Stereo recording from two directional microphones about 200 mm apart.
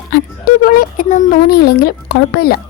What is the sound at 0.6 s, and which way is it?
A woman's voice, 45° left (ahead or behind).